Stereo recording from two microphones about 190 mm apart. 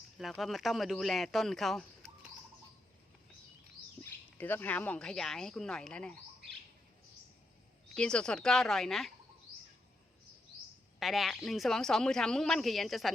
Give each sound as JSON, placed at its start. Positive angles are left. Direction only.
{"t": 0.2, "sound": "speech", "side_deg": 0}
{"t": 4.4, "sound": "speech", "side_deg": 10}
{"t": 7.9, "sound": "speech", "side_deg": 5}
{"t": 11.0, "sound": "speech", "side_deg": 0}